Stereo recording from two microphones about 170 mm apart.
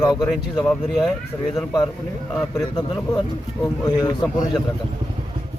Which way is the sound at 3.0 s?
15° left (ahead or behind).